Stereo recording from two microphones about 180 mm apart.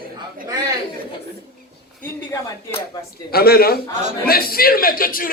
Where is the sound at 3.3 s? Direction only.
60° left (ahead or behind).